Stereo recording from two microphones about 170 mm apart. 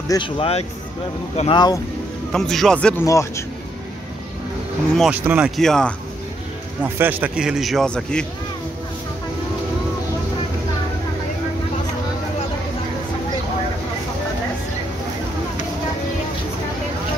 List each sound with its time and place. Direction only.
0.1 s speech: 30° left (ahead or behind)
2.3 s a man's voice: centre (ahead or behind)
3.1 s a man's voice: 15° left (ahead or behind)
4.9 s a man's voice: centre (ahead or behind)
5.6 s a man's voice: 5° left (ahead or behind)
6.8 s a man's voice: 10° right (ahead or behind); by 8.3 s 5° left (ahead or behind)